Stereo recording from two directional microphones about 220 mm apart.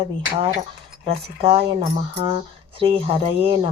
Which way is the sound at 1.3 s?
25° right (ahead or behind).